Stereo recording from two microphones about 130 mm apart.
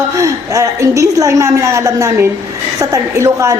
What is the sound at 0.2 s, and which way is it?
A woman's voice, 25° right (ahead or behind).